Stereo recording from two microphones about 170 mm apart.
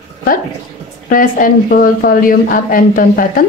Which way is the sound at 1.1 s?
55° left (ahead or behind).